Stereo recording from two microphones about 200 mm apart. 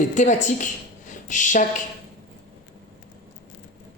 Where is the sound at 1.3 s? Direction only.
40° left (ahead or behind).